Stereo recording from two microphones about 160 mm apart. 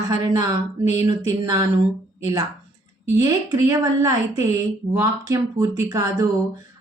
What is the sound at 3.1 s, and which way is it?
A woman's voice, 20° right (ahead or behind).